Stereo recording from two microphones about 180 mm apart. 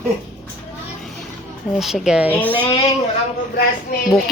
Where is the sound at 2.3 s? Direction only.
10° left (ahead or behind).